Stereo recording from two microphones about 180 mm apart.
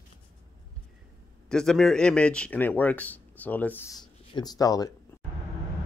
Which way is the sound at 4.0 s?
20° left (ahead or behind).